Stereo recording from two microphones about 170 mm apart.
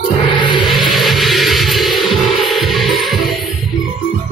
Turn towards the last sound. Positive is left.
turn(degrees=0)  # may be behind; listen again after turning